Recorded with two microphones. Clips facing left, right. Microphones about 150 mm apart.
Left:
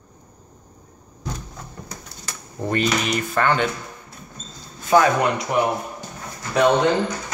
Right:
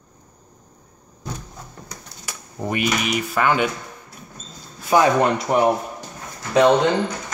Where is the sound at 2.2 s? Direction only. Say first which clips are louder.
Even; 10° right (ahead or behind).